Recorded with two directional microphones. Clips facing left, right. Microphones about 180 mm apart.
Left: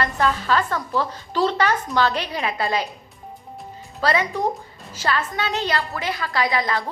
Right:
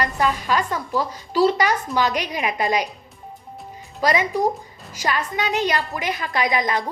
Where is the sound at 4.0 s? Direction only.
15° right (ahead or behind).